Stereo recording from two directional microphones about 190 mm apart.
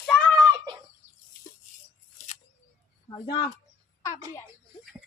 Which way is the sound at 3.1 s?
20° left (ahead or behind).